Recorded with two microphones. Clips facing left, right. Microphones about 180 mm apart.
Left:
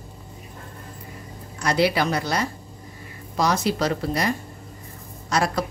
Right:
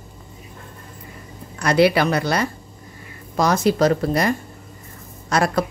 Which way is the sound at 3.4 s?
50° right (ahead or behind).